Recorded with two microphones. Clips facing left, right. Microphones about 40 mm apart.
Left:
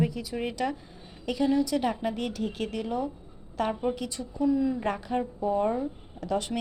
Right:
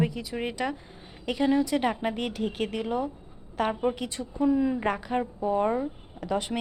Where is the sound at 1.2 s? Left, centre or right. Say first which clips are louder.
Right 1 dB; right.